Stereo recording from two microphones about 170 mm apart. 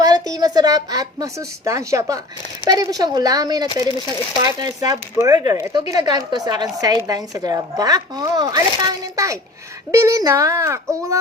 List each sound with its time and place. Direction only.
0.0 s speech: 20° right (ahead or behind)